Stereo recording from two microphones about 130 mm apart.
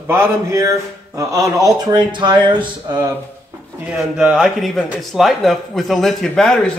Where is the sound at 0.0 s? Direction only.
15° right (ahead or behind); by 3.1 s 35° right (ahead or behind).